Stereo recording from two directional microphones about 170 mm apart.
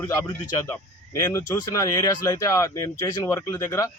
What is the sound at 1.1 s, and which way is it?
Speech, 15° left (ahead or behind).